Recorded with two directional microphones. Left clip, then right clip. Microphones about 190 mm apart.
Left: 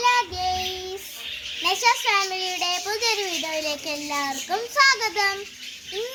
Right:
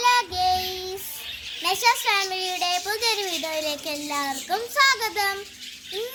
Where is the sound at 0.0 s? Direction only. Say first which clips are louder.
Right 1 dB; 5° right (ahead or behind).